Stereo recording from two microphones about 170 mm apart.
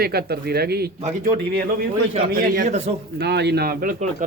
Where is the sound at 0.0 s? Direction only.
65° right (ahead or behind).